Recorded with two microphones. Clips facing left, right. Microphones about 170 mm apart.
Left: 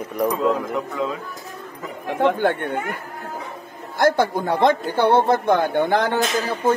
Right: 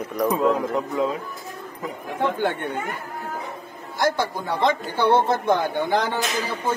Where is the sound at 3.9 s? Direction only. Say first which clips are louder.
Left 5 dB; 55° left (ahead or behind).